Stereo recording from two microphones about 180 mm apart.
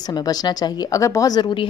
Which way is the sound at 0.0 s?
20° left (ahead or behind).